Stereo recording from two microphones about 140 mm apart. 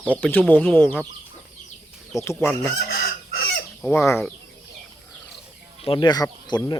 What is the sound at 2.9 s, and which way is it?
Chicken, 90° left.